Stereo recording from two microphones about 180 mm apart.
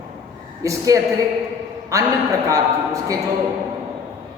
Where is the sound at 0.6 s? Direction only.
15° right (ahead or behind).